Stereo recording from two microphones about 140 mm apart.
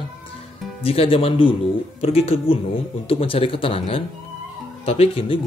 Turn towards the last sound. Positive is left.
turn(degrees=45)  # may be behind; listen again after turning